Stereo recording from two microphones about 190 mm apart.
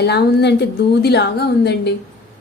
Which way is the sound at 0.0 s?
60° left (ahead or behind).